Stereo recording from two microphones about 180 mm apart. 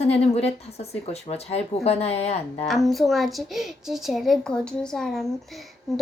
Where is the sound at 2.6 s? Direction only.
Centre (ahead or behind).